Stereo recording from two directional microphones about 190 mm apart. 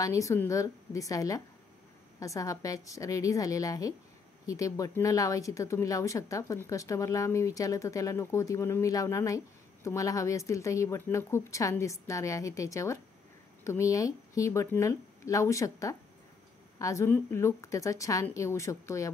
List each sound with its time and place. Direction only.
0.0 s a woman's voice: 15° left (ahead or behind)